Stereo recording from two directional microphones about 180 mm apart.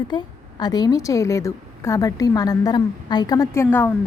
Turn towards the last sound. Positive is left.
turn(degrees=15)  # may be behind; listen again after turning